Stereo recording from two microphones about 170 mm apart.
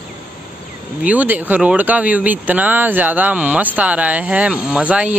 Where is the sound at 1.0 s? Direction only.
10° right (ahead or behind).